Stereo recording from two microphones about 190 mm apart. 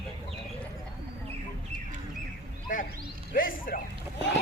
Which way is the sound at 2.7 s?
45° left (ahead or behind).